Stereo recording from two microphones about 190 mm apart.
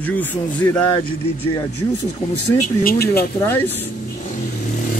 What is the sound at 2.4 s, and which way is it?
Speech, 40° left (ahead or behind).